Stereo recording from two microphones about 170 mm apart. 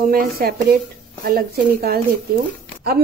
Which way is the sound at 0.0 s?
55° right (ahead or behind).